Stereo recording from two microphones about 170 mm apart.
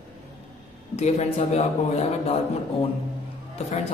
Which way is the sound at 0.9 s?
40° left (ahead or behind).